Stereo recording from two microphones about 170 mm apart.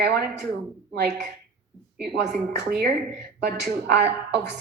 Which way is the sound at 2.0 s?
75° right (ahead or behind).